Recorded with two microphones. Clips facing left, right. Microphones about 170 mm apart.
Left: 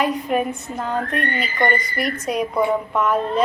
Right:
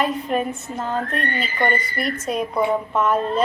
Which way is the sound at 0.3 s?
10° left (ahead or behind).